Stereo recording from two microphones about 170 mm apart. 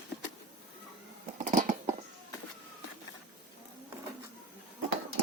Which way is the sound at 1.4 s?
45° right (ahead or behind).